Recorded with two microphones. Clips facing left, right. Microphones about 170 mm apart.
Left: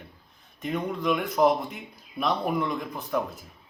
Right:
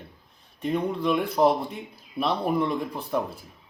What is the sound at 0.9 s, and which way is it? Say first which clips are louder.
Speech: right 2 dB; 30° right (ahead or behind).